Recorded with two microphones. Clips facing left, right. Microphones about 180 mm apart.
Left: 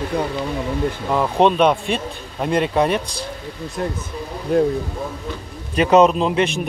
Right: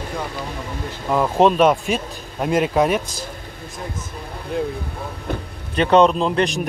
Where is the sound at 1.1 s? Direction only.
Centre (ahead or behind).